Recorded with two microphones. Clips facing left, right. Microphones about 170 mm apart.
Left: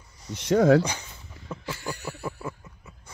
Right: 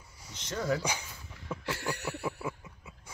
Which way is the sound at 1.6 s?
70° right (ahead or behind).